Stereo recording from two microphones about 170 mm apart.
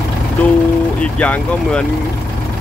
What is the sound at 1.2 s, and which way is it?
Speech, 10° left (ahead or behind).